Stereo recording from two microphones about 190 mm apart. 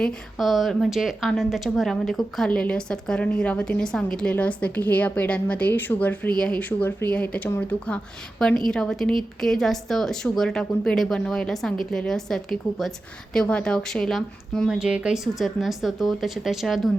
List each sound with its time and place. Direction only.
0.0 s a woman's voice: centre (ahead or behind)